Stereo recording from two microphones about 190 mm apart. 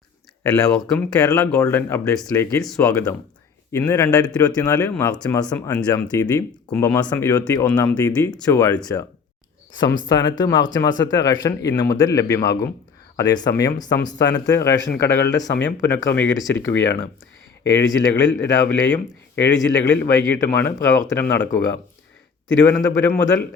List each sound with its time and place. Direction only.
0.5 s speech: 10° left (ahead or behind)
10.1 s speech: 20° left (ahead or behind)
22.6 s speech: 10° left (ahead or behind)